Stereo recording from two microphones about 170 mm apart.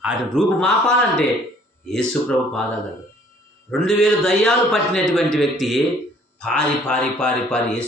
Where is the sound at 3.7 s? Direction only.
5° left (ahead or behind).